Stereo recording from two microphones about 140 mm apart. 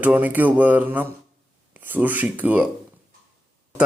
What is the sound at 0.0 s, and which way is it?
Speech, 10° right (ahead or behind).